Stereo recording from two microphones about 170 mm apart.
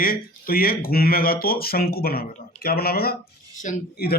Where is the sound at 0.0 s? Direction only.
60° left (ahead or behind).